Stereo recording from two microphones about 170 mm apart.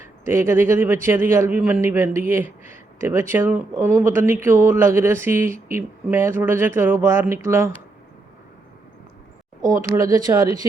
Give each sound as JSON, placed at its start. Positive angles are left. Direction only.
{"t": 0.3, "sound": "a man's voice", "side_deg": -15}
{"t": 9.9, "sound": "speech", "side_deg": -20}